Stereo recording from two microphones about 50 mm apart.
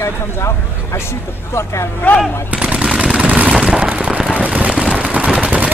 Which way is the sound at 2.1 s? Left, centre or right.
Left.